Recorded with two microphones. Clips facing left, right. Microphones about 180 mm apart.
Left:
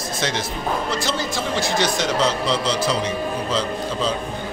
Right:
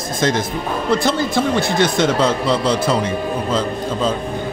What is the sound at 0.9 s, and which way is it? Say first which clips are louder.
Speech: right 7 dB; 55° right (ahead or behind).